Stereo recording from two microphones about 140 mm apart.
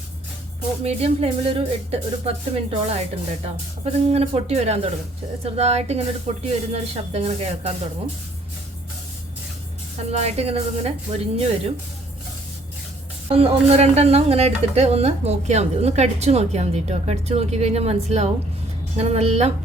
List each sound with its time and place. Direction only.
0.9 s speech: 45° right (ahead or behind)
10.0 s speech: 50° right (ahead or behind)
13.2 s speech: 45° right (ahead or behind)